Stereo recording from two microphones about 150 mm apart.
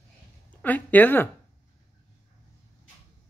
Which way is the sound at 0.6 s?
10° left (ahead or behind).